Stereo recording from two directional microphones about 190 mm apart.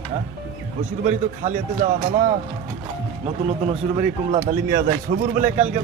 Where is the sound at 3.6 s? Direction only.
30° right (ahead or behind).